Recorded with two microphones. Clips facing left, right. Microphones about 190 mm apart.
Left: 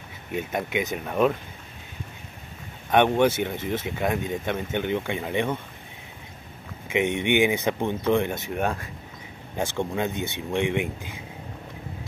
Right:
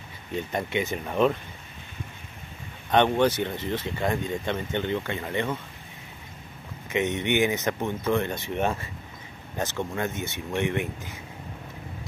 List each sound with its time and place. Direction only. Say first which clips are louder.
0.3 s speech: left 1 dB; 10° left (ahead or behind)
2.9 s speech: left 2 dB; 10° left (ahead or behind)
6.9 s speech: left 2 dB; 15° left (ahead or behind)
8.5 s speech: even; centre (ahead or behind)
9.6 s speech: left 2 dB; 15° left (ahead or behind)